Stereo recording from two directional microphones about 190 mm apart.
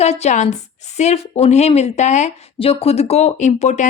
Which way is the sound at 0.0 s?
35° left (ahead or behind).